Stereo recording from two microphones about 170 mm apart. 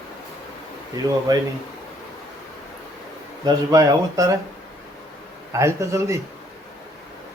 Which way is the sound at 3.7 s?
20° right (ahead or behind).